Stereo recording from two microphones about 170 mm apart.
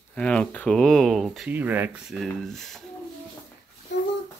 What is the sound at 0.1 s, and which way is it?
Speech, 5° left (ahead or behind).